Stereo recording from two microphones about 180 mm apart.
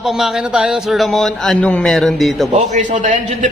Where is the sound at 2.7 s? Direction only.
45° right (ahead or behind).